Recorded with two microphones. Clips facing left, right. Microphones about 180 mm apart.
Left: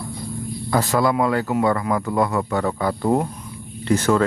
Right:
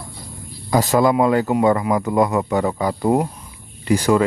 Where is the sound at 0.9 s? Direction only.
20° right (ahead or behind).